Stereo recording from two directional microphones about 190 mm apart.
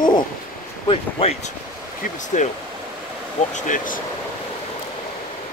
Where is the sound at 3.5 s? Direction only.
45° left (ahead or behind).